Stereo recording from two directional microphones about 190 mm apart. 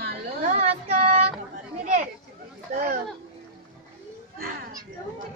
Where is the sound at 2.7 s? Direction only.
45° right (ahead or behind).